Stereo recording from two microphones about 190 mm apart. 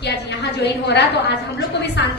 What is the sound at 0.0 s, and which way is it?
A woman's voice, 65° left (ahead or behind).